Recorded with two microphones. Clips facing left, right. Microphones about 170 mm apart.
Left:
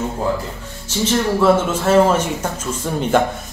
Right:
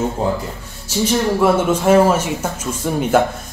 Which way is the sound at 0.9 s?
10° right (ahead or behind).